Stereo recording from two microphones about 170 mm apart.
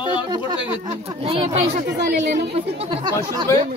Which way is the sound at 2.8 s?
25° right (ahead or behind).